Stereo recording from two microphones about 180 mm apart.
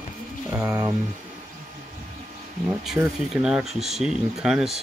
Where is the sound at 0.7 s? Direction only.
20° right (ahead or behind).